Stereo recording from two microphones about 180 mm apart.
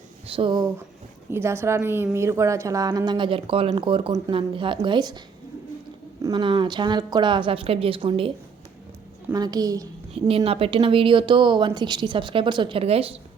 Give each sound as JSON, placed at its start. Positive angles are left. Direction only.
{"t": 0.3, "sound": "a woman's voice", "side_deg": -30}
{"t": 1.3, "sound": "a woman's voice", "side_deg": -15}
{"t": 6.2, "sound": "a woman's voice", "side_deg": -25}
{"t": 9.3, "sound": "a woman's voice", "side_deg": -20}
{"t": 10.2, "sound": "a woman's voice", "side_deg": -30}